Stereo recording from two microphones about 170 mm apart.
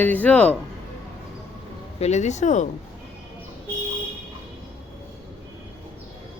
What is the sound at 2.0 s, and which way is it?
Speech, 40° left (ahead or behind).